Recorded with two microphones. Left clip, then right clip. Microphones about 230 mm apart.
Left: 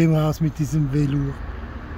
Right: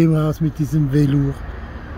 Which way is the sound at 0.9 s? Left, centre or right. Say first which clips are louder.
Right 7 dB; centre.